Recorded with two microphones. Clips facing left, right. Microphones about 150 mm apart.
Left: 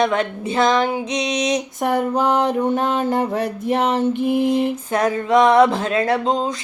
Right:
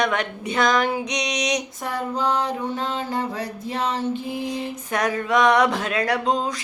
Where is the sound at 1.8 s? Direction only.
60° left (ahead or behind).